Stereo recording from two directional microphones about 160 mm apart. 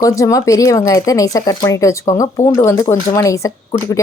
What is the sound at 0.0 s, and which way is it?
Speech, 20° left (ahead or behind).